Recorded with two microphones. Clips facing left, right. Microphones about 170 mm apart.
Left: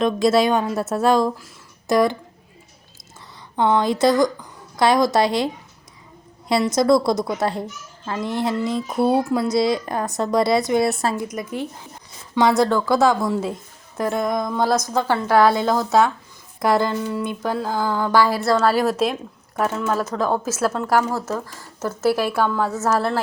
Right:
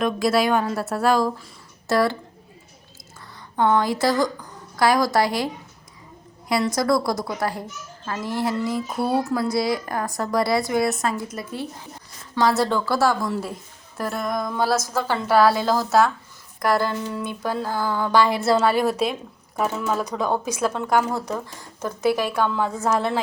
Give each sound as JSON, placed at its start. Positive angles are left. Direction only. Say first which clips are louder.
{"t": 0.0, "sound": "a woman's voice", "louder": "left 3 dB", "side_deg": 25}
{"t": 3.5, "sound": "speech", "louder": "left 1 dB", "side_deg": 15}
{"t": 6.5, "sound": "speech", "louder": "left 4 dB", "side_deg": 25}
{"t": 12.4, "sound": "a woman's voice", "louder": "left 3 dB", "side_deg": 20}
{"t": 15.5, "sound": "a woman's voice", "louder": "left 1 dB", "side_deg": -5}
{"t": 18.1, "sound": "a woman's voice", "louder": "left 1 dB", "side_deg": -15}
{"t": 18.6, "sound": "a woman's voice", "louder": "left 2 dB", "side_deg": 0}